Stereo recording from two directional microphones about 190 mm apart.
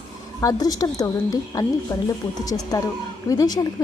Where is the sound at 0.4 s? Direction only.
20° left (ahead or behind).